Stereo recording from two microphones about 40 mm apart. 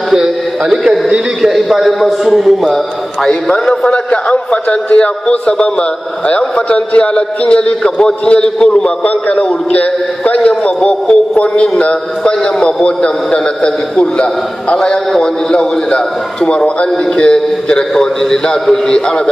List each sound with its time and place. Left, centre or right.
0.1 s a sound: centre
1.4 s a man's voice: centre
3.3 s a man's voice: centre
3.9 s a man's voice: left